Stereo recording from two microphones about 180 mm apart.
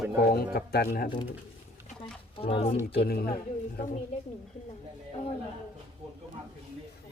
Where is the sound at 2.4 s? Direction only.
30° left (ahead or behind).